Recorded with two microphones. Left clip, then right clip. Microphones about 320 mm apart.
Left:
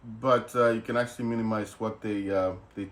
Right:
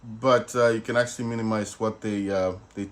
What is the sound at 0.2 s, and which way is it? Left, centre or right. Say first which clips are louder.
Speech: right 3 dB; right.